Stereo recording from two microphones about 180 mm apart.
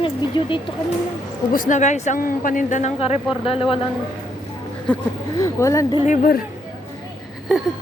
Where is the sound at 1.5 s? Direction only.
45° left (ahead or behind).